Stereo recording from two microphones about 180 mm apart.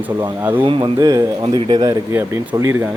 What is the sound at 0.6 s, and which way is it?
Speech, 25° right (ahead or behind).